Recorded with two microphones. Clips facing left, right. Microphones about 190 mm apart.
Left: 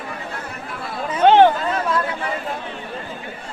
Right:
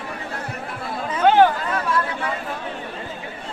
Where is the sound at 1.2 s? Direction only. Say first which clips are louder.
Left 3 dB; 25° left (ahead or behind).